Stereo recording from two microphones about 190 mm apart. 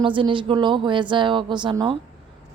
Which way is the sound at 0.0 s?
25° right (ahead or behind).